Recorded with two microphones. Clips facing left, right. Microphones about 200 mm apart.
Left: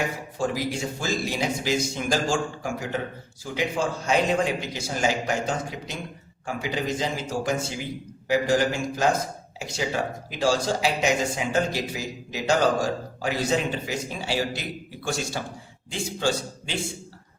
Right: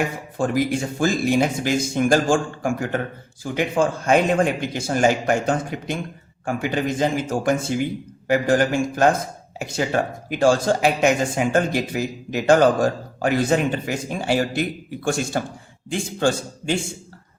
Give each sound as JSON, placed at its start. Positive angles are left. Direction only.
{"t": 0.3, "sound": "speech", "side_deg": -55}